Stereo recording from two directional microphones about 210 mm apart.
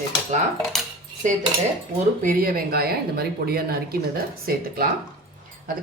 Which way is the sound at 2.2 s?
40° right (ahead or behind).